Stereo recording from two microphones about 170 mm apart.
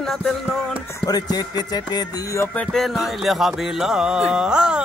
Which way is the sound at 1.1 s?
25° left (ahead or behind).